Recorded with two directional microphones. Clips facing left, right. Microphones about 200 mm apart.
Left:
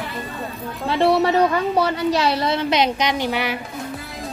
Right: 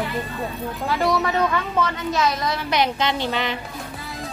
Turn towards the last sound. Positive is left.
turn(degrees=15)  # may be behind; listen again after turning